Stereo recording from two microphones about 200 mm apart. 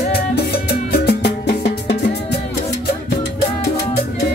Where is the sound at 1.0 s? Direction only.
55° left (ahead or behind).